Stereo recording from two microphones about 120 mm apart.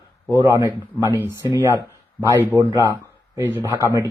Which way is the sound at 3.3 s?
20° right (ahead or behind).